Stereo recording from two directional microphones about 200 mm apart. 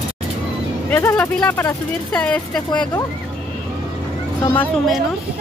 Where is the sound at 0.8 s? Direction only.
10° left (ahead or behind).